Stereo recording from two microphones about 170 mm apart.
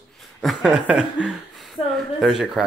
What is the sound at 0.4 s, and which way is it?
Speech, centre (ahead or behind).